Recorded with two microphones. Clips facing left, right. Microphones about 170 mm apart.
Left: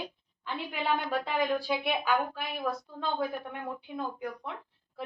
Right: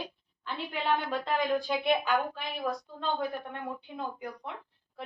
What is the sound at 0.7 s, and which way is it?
A woman's voice, 10° left (ahead or behind).